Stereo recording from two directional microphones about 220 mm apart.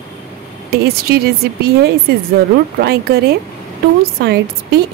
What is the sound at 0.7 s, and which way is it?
Speech, 45° right (ahead or behind).